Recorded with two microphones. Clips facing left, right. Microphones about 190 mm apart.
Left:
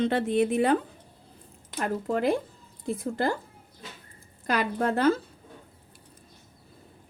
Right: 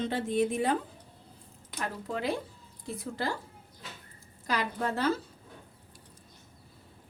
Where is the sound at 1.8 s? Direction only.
50° left (ahead or behind).